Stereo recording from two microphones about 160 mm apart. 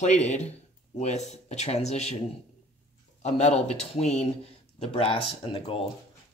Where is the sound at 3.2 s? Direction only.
45° left (ahead or behind).